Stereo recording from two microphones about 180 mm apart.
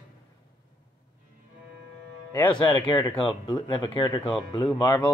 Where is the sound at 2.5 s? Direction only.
25° left (ahead or behind).